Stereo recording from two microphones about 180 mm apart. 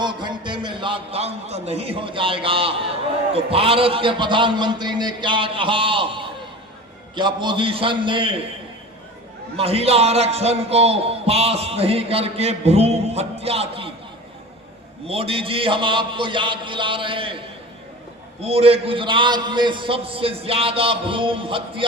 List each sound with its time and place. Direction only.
0.0 s a man's voice: 25° right (ahead or behind)
9.6 s a man's voice: 35° right (ahead or behind)
15.0 s a man's voice: 30° right (ahead or behind)